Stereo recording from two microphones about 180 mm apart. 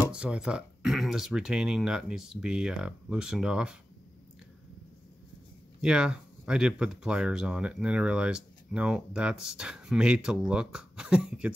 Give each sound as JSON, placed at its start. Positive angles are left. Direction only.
{"t": 0.0, "sound": "speech", "side_deg": -5}
{"t": 5.8, "sound": "speech", "side_deg": -5}